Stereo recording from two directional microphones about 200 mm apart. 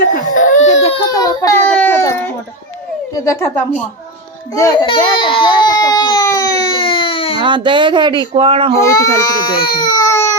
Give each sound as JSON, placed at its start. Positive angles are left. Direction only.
{"t": 0.0, "sound": "baby cry", "side_deg": 40}
{"t": 0.9, "sound": "baby cry", "side_deg": 20}
{"t": 3.2, "sound": "speech", "side_deg": 10}
{"t": 4.5, "sound": "baby cry", "side_deg": 20}
{"t": 7.4, "sound": "speech", "side_deg": -25}
{"t": 8.9, "sound": "speech", "side_deg": 15}
{"t": 9.6, "sound": "baby cry", "side_deg": 20}